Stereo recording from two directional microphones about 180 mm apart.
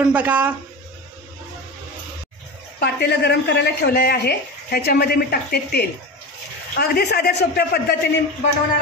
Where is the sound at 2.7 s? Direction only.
65° left (ahead or behind).